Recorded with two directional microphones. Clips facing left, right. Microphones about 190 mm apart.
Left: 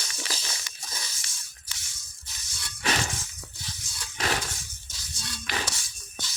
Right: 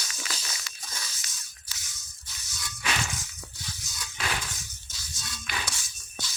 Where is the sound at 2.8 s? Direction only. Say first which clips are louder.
Left 4 dB; 35° left (ahead or behind).